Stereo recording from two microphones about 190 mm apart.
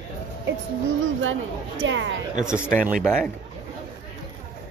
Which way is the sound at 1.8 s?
75° right (ahead or behind).